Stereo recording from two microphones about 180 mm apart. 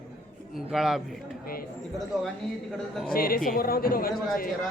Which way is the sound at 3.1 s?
55° left (ahead or behind).